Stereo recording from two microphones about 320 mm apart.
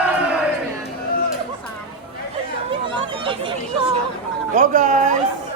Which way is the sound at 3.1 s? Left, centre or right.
Centre.